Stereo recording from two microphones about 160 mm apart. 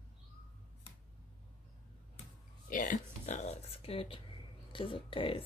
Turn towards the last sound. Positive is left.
turn(degrees=35)  # may be behind; listen again after turning